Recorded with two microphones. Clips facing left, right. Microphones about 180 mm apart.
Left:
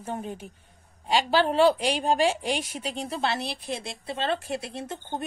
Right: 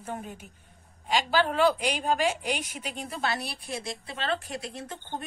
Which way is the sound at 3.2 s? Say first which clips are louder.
Left 1 dB; 25° left (ahead or behind).